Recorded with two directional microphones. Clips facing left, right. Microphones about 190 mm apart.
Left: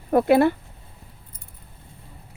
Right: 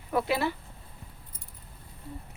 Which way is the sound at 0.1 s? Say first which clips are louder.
Left 11 dB; 50° left (ahead or behind).